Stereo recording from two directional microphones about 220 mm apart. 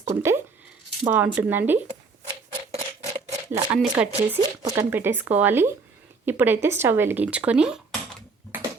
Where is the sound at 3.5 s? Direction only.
20° right (ahead or behind).